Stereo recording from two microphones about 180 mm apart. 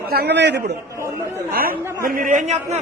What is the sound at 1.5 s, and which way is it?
A man's voice, 55° right (ahead or behind).